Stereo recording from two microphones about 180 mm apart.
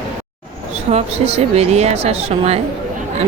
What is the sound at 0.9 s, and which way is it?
A woman's voice, 35° right (ahead or behind).